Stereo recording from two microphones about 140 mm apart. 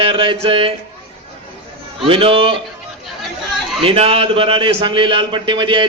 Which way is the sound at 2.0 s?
40° right (ahead or behind).